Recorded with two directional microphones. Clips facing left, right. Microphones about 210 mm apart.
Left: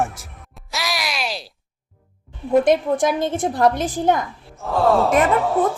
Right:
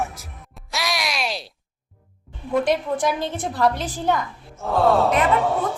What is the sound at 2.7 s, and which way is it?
A woman's voice, 50° left (ahead or behind).